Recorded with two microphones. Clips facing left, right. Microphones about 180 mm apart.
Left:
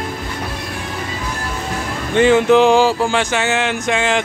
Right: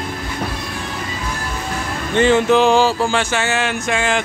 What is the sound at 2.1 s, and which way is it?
Speech, 15° left (ahead or behind).